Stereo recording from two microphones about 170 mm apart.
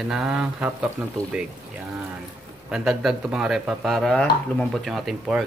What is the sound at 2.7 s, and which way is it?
Speech, 5° right (ahead or behind).